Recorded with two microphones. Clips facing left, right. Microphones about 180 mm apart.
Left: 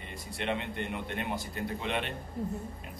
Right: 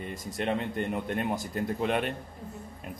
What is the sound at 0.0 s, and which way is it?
A man's voice, 45° right (ahead or behind).